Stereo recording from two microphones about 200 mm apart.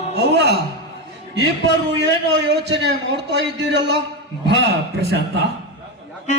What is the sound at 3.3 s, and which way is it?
A man's voice, 60° right (ahead or behind).